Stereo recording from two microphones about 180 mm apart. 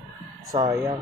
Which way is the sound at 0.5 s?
20° right (ahead or behind).